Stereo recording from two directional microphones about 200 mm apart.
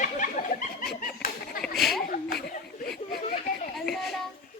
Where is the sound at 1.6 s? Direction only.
Centre (ahead or behind).